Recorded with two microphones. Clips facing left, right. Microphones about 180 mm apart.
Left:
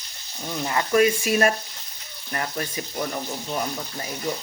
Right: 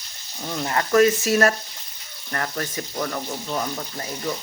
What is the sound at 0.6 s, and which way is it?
Speech, 15° left (ahead or behind).